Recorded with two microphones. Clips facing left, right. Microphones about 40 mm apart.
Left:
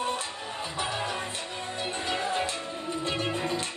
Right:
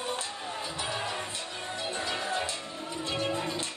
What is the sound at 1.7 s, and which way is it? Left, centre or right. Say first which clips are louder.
Music: left 2 dB; left.